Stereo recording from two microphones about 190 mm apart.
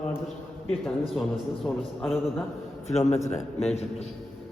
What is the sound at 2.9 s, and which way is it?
Speech, 35° left (ahead or behind).